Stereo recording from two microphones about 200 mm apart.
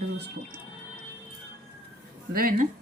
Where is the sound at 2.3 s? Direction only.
45° right (ahead or behind).